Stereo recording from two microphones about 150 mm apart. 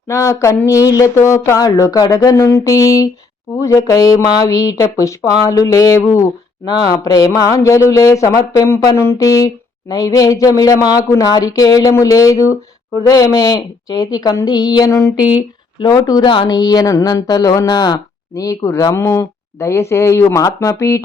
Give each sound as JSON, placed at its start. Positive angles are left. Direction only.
{"t": 0.1, "sound": "speech", "side_deg": 20}